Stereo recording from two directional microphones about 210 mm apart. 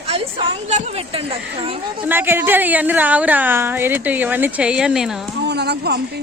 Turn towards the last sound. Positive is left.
turn(degrees=-50)  # may be behind; listen again after turning